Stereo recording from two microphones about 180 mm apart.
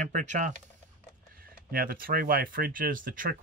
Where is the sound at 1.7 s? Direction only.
55° right (ahead or behind).